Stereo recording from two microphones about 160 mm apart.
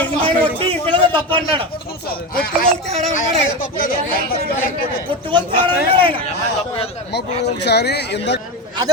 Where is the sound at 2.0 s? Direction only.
70° left (ahead or behind).